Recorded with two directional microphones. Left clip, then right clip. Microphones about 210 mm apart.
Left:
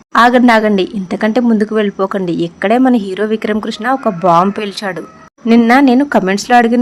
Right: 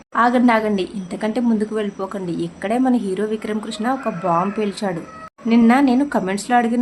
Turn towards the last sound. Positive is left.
turn(degrees=35)  # may be behind; listen again after turning